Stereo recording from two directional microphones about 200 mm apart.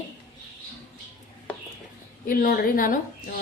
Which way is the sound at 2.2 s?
45° left (ahead or behind).